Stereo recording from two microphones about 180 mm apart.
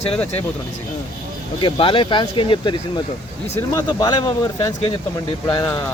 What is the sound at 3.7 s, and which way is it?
Speech, 20° left (ahead or behind).